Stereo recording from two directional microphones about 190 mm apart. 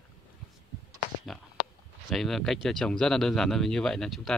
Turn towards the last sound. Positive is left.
turn(degrees=0)  # may be behind; listen again after turning